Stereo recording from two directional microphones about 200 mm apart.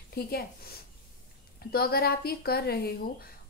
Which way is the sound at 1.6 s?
50° left (ahead or behind).